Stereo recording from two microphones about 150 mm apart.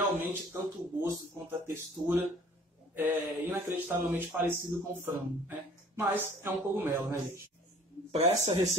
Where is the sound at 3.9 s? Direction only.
15° right (ahead or behind).